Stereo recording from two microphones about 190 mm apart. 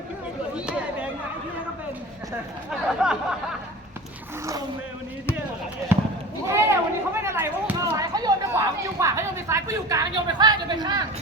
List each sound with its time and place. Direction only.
2.6 s speech: 5° right (ahead or behind)
5.9 s basketball bounce: 10° right (ahead or behind)
6.5 s speech: 15° right (ahead or behind)